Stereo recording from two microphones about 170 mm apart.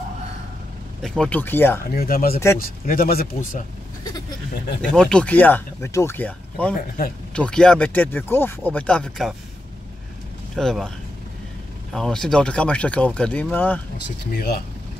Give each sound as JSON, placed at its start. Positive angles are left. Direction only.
{"t": 1.0, "sound": "speech", "side_deg": 5}
{"t": 1.9, "sound": "speech", "side_deg": 60}
{"t": 4.9, "sound": "speech", "side_deg": 5}
{"t": 10.5, "sound": "speech", "side_deg": 0}
{"t": 11.9, "sound": "speech", "side_deg": 5}
{"t": 14.3, "sound": "speech", "side_deg": 65}